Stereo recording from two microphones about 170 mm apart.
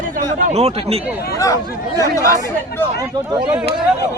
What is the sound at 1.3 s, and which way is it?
Speech, 20° left (ahead or behind).